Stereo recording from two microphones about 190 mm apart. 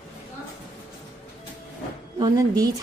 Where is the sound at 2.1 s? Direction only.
20° right (ahead or behind).